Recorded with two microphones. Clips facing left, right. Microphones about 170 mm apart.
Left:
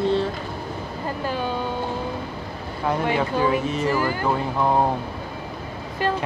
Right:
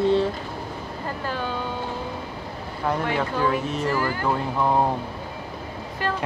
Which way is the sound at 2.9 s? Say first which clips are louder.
Left 2 dB; 10° left (ahead or behind).